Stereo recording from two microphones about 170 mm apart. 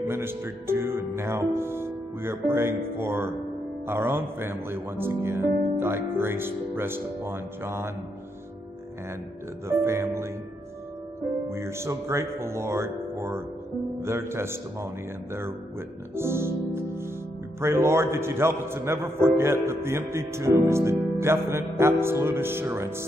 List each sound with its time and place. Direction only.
0.1 s a man's voice: 15° right (ahead or behind)
9.7 s a man's voice: 15° right (ahead or behind)
11.5 s a man's voice: 15° right (ahead or behind)
16.2 s a man's voice: 15° right (ahead or behind)